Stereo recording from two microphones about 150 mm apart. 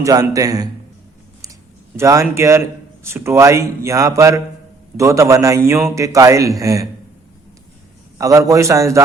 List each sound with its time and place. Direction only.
0.0 s speech: 25° right (ahead or behind)
2.0 s speech: 20° right (ahead or behind)
8.2 s speech: 20° right (ahead or behind)